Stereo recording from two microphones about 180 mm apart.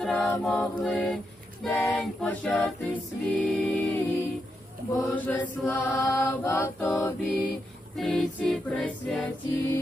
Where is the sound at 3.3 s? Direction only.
5° left (ahead or behind).